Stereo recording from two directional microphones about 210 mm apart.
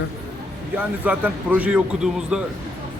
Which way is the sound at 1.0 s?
5° right (ahead or behind).